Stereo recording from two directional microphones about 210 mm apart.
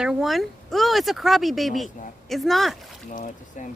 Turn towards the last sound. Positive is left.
turn(degrees=35)  # may be behind; listen again after turning